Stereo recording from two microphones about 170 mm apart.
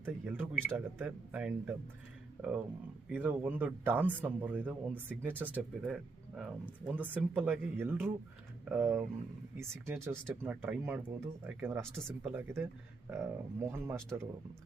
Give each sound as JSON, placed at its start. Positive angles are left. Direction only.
{"t": 0.0, "sound": "speech", "side_deg": -10}
{"t": 3.1, "sound": "speech", "side_deg": -10}